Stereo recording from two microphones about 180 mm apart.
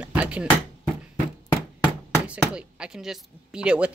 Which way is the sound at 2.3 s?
5° right (ahead or behind).